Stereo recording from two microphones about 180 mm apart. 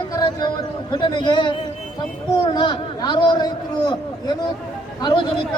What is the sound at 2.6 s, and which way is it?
A man's voice, 25° left (ahead or behind).